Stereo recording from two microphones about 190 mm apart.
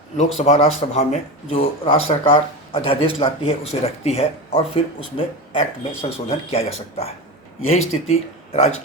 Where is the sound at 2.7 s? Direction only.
30° left (ahead or behind).